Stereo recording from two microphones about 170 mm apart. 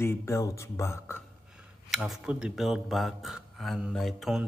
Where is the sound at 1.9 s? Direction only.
Centre (ahead or behind).